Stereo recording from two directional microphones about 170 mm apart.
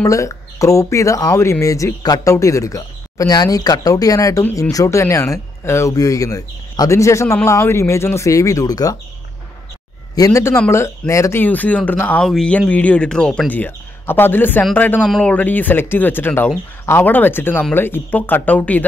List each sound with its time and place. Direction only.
0.0 s speech: 20° left (ahead or behind)
10.1 s speech: 20° left (ahead or behind)